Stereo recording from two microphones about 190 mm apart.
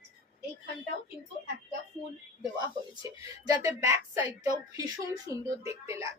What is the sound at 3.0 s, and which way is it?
A woman's voice, 15° right (ahead or behind).